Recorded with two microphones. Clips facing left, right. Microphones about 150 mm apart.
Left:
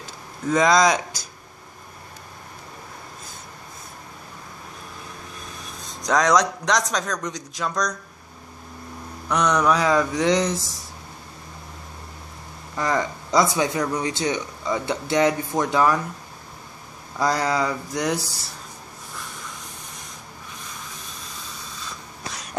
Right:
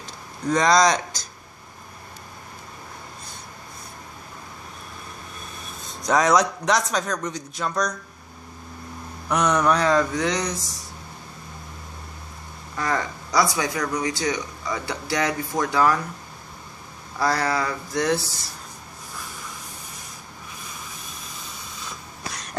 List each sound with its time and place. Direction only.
0.0 s a sound: 5° left (ahead or behind)
5.6 s a man's voice: 5° right (ahead or behind)
9.3 s speech: 5° right (ahead or behind)
10.1 s speech: 20° left (ahead or behind)
12.7 s speech: 15° left (ahead or behind)
17.2 s speech: 20° left (ahead or behind)